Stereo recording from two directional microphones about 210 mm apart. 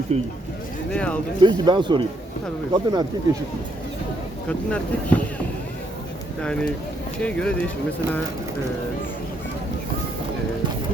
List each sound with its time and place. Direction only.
0.1 s speech: 30° right (ahead or behind)
0.9 s speech: 5° left (ahead or behind)
1.4 s speech: 20° right (ahead or behind)
4.4 s speech: 5° left (ahead or behind)
6.4 s speech: 5° left (ahead or behind)